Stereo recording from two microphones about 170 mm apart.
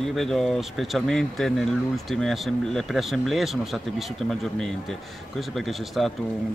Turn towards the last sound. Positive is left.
turn(degrees=0)  # may be behind; listen again after turning